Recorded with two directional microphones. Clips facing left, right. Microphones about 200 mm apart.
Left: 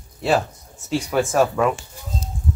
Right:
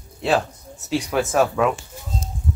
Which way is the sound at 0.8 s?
Centre (ahead or behind).